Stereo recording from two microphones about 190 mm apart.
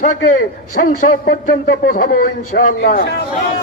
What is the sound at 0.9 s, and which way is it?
A man's voice, 45° left (ahead or behind).